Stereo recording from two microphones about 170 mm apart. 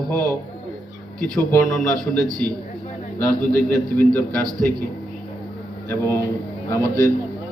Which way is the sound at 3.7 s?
10° left (ahead or behind).